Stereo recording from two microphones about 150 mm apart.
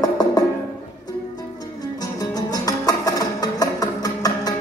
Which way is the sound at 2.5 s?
25° left (ahead or behind).